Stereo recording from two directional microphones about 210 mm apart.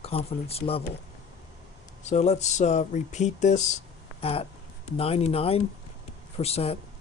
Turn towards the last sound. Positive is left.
turn(degrees=30)  # may be behind; listen again after turning